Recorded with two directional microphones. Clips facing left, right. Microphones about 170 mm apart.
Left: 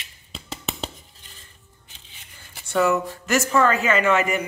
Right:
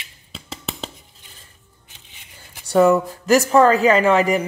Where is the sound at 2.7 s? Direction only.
35° right (ahead or behind).